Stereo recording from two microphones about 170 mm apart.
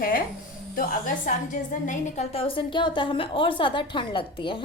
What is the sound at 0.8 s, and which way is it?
A woman's voice, 50° left (ahead or behind).